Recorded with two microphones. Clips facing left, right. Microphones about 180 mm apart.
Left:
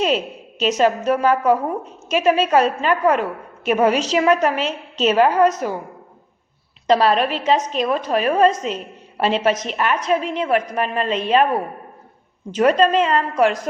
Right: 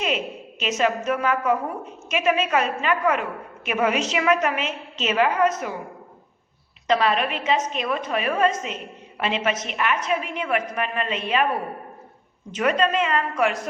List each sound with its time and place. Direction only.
0.6 s a woman's voice: 35° left (ahead or behind)
6.8 s a woman's voice: 35° left (ahead or behind)
12.5 s a woman's voice: 35° left (ahead or behind)